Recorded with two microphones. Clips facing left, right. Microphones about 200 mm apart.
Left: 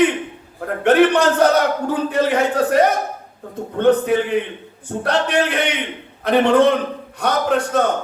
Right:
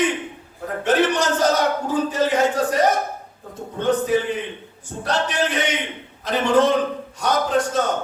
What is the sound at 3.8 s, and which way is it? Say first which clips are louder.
A man's voice: left 4 dB; 60° left (ahead or behind).